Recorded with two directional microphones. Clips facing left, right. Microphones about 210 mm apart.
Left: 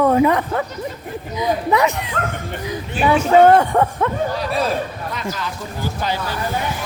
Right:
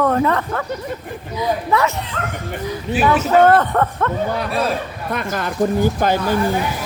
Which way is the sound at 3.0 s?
10° left (ahead or behind).